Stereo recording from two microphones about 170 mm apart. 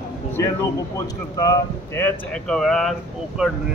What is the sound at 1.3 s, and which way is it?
Speech, 20° left (ahead or behind).